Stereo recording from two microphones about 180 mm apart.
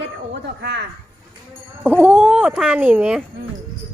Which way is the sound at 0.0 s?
70° right (ahead or behind).